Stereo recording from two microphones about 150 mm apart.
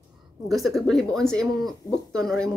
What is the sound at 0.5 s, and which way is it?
Speech, centre (ahead or behind).